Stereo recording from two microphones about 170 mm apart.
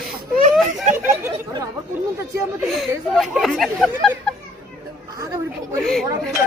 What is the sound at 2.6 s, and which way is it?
Speech, centre (ahead or behind).